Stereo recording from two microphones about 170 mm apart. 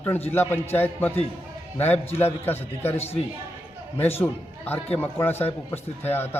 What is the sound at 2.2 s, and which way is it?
Speech, 10° left (ahead or behind).